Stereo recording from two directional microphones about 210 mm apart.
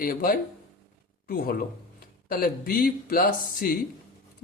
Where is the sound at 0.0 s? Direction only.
45° left (ahead or behind).